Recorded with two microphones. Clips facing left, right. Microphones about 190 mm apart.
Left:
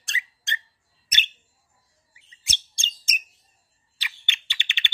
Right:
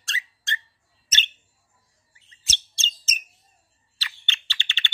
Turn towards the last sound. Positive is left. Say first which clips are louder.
# even
turn(degrees=15)  # may be behind; listen again after turning